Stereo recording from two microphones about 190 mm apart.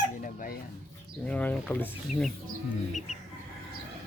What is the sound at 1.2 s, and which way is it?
Speech, 5° left (ahead or behind).